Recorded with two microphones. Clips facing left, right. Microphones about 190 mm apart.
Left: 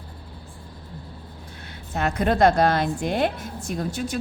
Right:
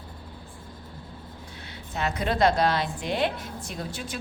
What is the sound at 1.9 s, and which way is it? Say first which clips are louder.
A woman's voice: left 5 dB; 50° left (ahead or behind).